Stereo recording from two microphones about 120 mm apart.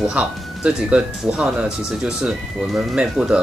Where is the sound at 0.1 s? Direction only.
10° right (ahead or behind).